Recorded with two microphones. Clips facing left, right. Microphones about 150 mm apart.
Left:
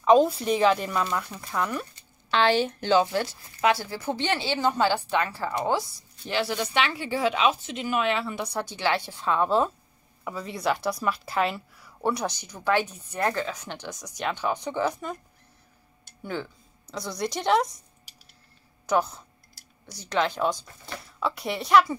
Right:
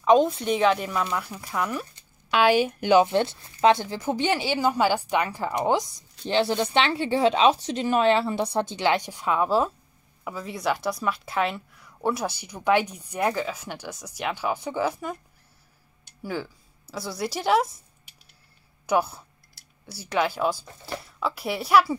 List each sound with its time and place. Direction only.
0.0 s a woman's voice: centre (ahead or behind)
16.2 s speech: 5° right (ahead or behind)
18.9 s speech: 10° right (ahead or behind)